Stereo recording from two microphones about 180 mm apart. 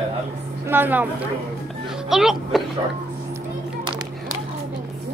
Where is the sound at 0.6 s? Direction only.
10° right (ahead or behind).